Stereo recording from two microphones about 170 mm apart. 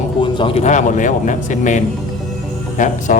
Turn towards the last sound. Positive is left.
turn(degrees=45)  # may be behind; listen again after turning